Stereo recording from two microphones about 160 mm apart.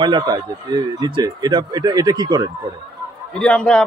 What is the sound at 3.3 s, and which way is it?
Speech, 5° left (ahead or behind).